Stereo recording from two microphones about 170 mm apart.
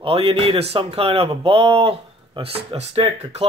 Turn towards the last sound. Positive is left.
turn(degrees=-35)  # may be behind; listen again after turning